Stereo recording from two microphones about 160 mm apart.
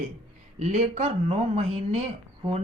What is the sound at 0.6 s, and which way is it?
Speech, 45° right (ahead or behind).